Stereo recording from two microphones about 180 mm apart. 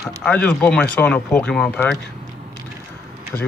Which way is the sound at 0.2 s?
5° left (ahead or behind).